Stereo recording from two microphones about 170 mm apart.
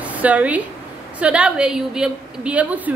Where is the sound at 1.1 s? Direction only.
5° right (ahead or behind).